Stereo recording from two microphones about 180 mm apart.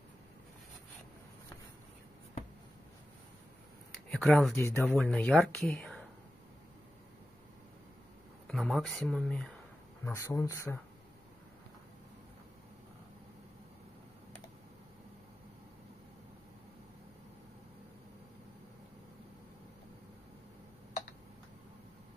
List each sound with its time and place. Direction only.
4.1 s speech: centre (ahead or behind)
4.6 s speech: 15° left (ahead or behind)
4.8 s speech: centre (ahead or behind)
5.7 s a sound: 5° left (ahead or behind)
8.5 s speech: centre (ahead or behind)
10.0 s speech: 15° left (ahead or behind)